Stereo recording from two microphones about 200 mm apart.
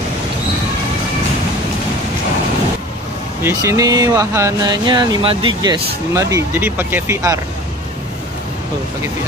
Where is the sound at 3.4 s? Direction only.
15° right (ahead or behind).